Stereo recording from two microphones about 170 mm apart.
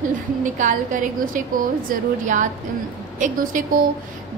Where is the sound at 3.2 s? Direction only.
55° right (ahead or behind).